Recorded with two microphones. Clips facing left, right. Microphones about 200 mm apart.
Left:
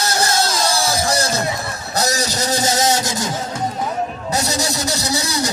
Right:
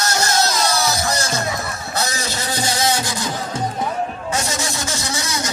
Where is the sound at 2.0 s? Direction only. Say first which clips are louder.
Left 5 dB; 40° left (ahead or behind).